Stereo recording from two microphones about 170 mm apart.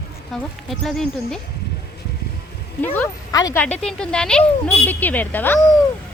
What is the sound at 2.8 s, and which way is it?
Speech, 10° left (ahead or behind).